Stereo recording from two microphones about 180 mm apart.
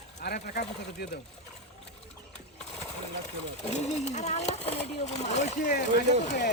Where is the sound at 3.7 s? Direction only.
40° left (ahead or behind).